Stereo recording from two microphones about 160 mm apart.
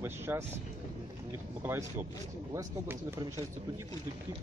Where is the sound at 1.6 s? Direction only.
15° right (ahead or behind).